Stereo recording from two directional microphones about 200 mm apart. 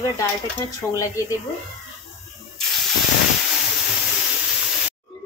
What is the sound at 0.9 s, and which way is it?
Speech, 15° left (ahead or behind).